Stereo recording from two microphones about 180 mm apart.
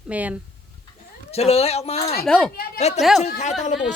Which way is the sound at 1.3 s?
35° left (ahead or behind).